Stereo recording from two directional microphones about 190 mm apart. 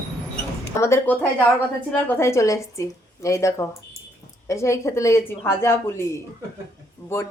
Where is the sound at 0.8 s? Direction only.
15° left (ahead or behind).